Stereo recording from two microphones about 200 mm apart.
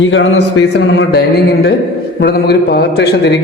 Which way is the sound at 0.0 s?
70° left (ahead or behind).